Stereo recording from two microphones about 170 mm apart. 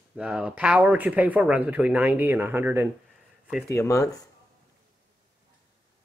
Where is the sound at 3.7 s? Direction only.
20° left (ahead or behind).